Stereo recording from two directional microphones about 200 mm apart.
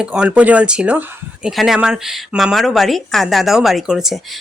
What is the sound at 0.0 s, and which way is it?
Speech, 5° right (ahead or behind).